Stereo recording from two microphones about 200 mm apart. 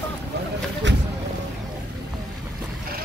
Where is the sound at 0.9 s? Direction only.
65° right (ahead or behind).